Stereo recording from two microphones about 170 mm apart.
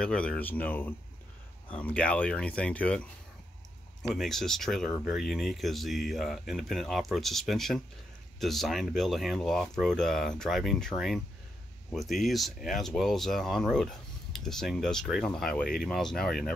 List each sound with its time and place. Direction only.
0.0 s speech: 5° left (ahead or behind)
4.0 s speech: centre (ahead or behind)